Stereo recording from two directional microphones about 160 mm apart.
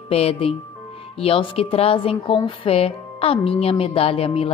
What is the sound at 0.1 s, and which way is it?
Speech, 35° left (ahead or behind).